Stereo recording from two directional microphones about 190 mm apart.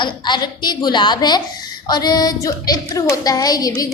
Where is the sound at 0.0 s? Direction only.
25° left (ahead or behind).